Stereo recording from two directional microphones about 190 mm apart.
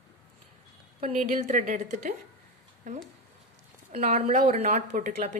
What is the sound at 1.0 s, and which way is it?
A woman's voice, 35° right (ahead or behind).